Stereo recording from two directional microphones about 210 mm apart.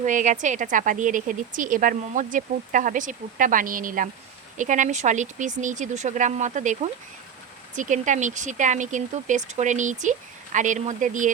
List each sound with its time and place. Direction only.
0.0 s speech: 35° right (ahead or behind)